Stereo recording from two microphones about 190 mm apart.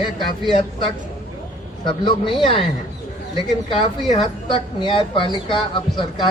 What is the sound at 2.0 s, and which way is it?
Speech, 25° left (ahead or behind).